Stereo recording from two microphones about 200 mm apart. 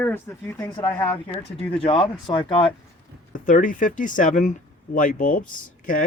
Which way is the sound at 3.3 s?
40° left (ahead or behind).